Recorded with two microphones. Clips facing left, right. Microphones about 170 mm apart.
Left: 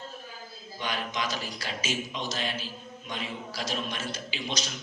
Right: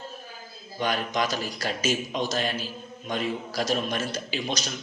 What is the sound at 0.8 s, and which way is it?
A man's voice, 45° right (ahead or behind).